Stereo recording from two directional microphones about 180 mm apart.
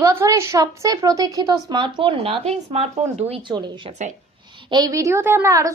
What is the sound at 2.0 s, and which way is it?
A woman's voice, 30° right (ahead or behind).